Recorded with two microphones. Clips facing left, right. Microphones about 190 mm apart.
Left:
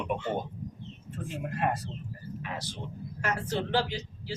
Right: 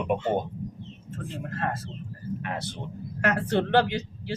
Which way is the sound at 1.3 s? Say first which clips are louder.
Left 1 dB; 15° left (ahead or behind).